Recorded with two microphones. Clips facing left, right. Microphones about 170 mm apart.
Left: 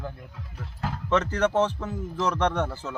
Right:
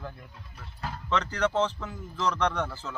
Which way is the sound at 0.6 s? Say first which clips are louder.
Left 5 dB; 50° left (ahead or behind).